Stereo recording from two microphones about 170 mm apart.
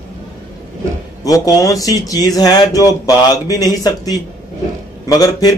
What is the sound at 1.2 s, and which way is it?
Speech, 20° left (ahead or behind).